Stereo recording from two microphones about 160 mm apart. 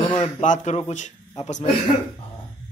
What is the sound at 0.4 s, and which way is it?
A man's voice, 50° left (ahead or behind).